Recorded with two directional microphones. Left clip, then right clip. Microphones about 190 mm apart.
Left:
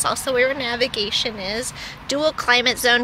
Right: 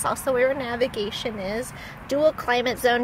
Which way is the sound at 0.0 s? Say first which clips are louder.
Left 2 dB; 25° right (ahead or behind).